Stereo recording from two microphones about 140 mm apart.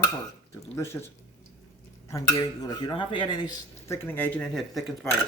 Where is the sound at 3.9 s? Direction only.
15° left (ahead or behind).